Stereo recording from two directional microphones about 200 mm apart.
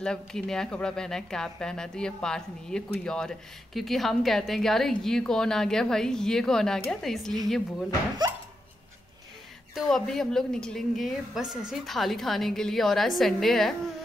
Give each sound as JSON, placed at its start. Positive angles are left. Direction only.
{"t": 0.0, "sound": "speech", "side_deg": 5}
{"t": 9.8, "sound": "speech", "side_deg": 0}